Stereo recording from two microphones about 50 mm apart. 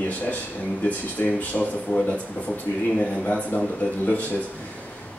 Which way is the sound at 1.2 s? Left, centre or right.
Left.